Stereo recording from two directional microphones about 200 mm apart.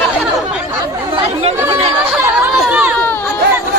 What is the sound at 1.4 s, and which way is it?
Chatter, 30° right (ahead or behind).